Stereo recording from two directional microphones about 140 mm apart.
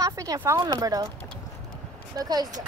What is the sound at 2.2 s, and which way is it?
Speech, 30° right (ahead or behind).